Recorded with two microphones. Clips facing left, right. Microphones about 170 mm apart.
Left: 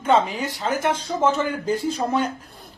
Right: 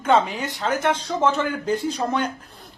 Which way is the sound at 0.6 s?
10° left (ahead or behind).